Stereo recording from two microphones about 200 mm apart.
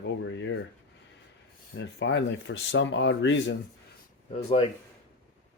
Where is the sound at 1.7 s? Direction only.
65° left (ahead or behind).